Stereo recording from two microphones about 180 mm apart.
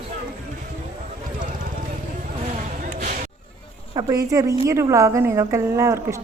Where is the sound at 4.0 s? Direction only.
20° right (ahead or behind).